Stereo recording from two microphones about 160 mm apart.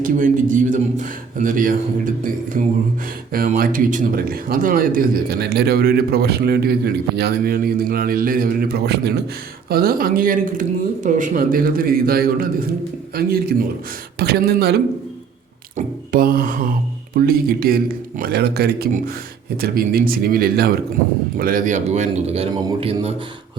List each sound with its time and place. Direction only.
0.0 s speech: 55° right (ahead or behind); by 9.2 s 90° right
9.6 s speech: 70° right (ahead or behind)
15.7 s speech: 60° right (ahead or behind); by 18.9 s 80° right
19.5 s speech: 70° right (ahead or behind)
21.3 s speech: 60° right (ahead or behind); by 22.4 s 45° right (ahead or behind)
22.5 s a man's voice: 30° right (ahead or behind)